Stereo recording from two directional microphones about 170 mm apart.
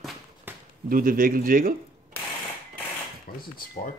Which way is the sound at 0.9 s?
55° right (ahead or behind).